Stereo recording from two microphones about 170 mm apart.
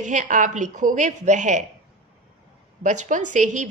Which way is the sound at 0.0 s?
45° right (ahead or behind).